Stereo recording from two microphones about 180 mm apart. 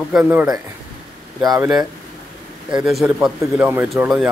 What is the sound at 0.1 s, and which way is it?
Speech, 10° right (ahead or behind).